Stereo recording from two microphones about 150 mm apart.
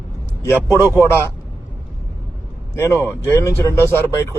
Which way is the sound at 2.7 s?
15° left (ahead or behind).